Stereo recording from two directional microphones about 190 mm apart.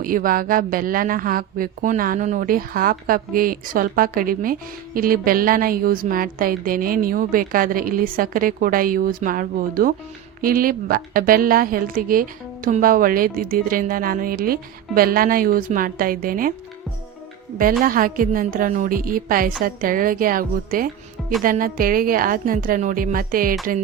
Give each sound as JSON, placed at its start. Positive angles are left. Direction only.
{"t": 0.0, "sound": "a woman's voice", "side_deg": -50}
{"t": 17.6, "sound": "a woman's voice", "side_deg": -45}